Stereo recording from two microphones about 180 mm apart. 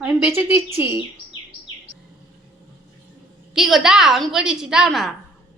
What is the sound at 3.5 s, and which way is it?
A woman's voice, centre (ahead or behind).